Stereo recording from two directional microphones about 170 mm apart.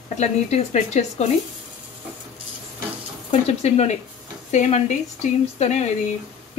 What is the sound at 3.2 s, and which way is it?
Speech, 35° left (ahead or behind).